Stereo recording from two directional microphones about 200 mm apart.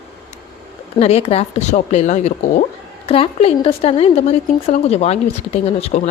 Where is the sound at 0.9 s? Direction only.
30° left (ahead or behind).